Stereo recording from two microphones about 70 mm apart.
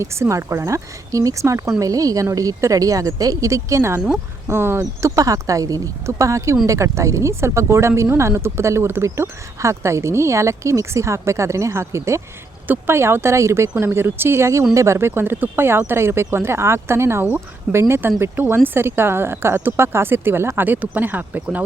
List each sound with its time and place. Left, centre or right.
0.0 s speech: right
1.8 s speech: right
4.8 s speech: right
12.6 s speech: right